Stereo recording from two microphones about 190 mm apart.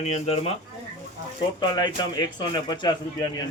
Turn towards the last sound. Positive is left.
turn(degrees=25)  # may be behind; listen again after turning